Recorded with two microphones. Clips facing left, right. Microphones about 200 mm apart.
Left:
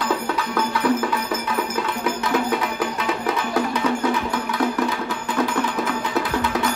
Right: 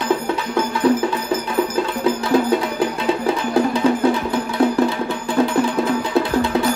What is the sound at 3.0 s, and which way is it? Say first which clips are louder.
Music: right 5 dB; 30° right (ahead or behind).